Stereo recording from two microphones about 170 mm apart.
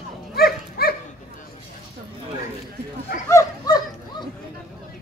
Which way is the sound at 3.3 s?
20° left (ahead or behind).